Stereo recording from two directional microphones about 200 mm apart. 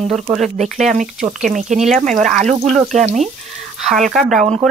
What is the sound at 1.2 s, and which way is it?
Speech, 40° right (ahead or behind).